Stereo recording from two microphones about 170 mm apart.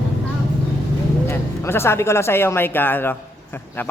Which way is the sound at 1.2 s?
15° left (ahead or behind).